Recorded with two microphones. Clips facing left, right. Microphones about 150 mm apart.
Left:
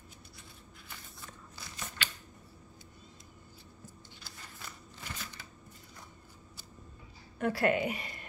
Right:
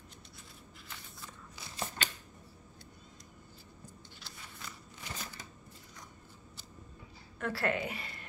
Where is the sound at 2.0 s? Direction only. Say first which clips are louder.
Left 2 dB; 45° right (ahead or behind).